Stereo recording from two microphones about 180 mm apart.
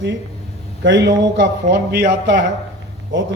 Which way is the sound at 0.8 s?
80° right.